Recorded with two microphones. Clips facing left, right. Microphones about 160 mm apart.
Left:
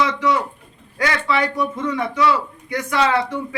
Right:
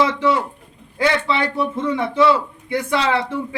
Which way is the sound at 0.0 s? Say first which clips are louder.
Right 2 dB; 25° right (ahead or behind).